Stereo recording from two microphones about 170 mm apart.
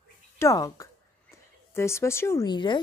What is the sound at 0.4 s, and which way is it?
Speech, 20° left (ahead or behind).